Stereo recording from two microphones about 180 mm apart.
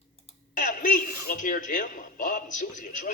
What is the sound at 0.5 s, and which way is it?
A man's voice, 45° left (ahead or behind).